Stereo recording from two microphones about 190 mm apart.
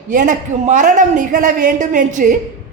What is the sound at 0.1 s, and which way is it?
A woman's voice, 45° right (ahead or behind).